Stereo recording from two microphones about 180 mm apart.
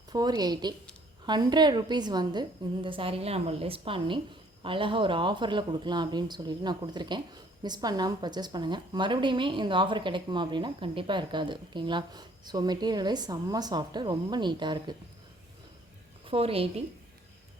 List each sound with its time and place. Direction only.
0.1 s a woman's voice: 20° right (ahead or behind)
16.2 s a woman's voice: 30° right (ahead or behind)